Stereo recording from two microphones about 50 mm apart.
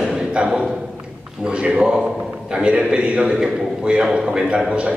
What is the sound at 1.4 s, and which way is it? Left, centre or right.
A man's voice, right.